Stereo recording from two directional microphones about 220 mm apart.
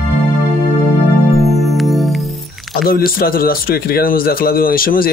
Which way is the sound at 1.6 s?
Centre (ahead or behind).